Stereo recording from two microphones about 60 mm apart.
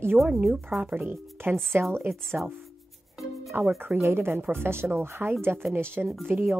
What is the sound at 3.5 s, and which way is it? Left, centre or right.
A woman's voice, right.